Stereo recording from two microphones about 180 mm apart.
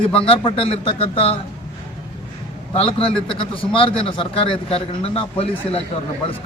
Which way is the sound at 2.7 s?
30° left (ahead or behind).